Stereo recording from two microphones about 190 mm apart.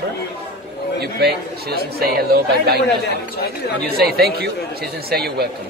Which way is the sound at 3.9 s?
55° right (ahead or behind).